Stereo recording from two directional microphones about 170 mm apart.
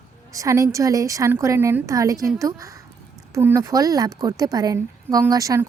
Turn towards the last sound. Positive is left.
turn(degrees=-20)  # may be behind; listen again after turning